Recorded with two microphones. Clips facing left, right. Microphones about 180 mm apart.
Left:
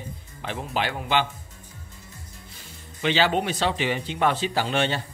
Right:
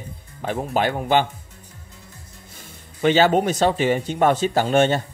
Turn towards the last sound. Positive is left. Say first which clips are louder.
# right 7 dB
turn(degrees=-45)  # may be behind; listen again after turning